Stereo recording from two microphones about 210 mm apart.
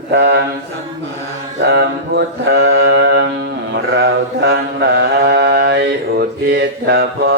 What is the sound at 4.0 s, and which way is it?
Mantra, 50° right (ahead or behind).